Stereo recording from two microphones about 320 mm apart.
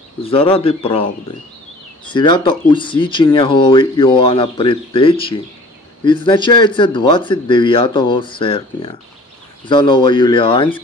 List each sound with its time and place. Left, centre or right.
0.2 s speech: centre
2.0 s speech: centre